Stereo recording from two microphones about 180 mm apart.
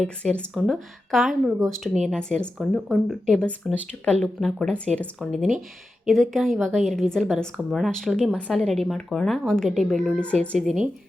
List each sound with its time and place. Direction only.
0.3 s a woman's voice: centre (ahead or behind)